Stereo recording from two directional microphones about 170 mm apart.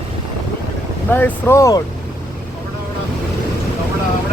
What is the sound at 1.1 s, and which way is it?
Speech, 15° left (ahead or behind).